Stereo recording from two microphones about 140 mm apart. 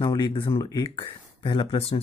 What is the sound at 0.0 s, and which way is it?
Speech, 30° left (ahead or behind).